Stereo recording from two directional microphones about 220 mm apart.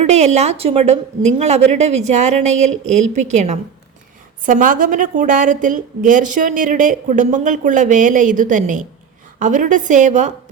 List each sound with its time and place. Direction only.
0.0 s a woman's voice: 30° right (ahead or behind)